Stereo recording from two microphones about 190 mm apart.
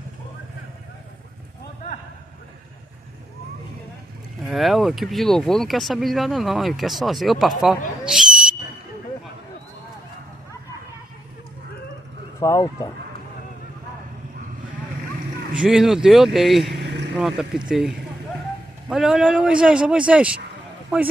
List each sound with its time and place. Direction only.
4.5 s speech: centre (ahead or behind)
8.1 s whistle: 5° right (ahead or behind)
12.4 s speech: 15° left (ahead or behind)
15.5 s speech: 5° right (ahead or behind)